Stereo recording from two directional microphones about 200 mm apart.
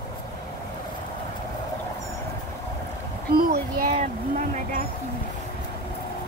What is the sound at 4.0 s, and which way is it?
Speech, 35° right (ahead or behind).